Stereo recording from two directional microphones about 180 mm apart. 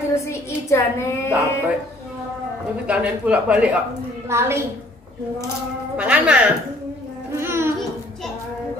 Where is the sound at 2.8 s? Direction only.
5° right (ahead or behind).